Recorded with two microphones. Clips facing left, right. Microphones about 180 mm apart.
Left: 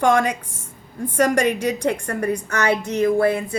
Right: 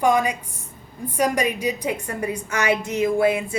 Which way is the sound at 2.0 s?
75° left (ahead or behind).